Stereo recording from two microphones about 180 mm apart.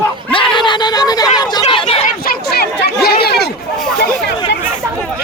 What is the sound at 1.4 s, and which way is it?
Chatter, 20° left (ahead or behind).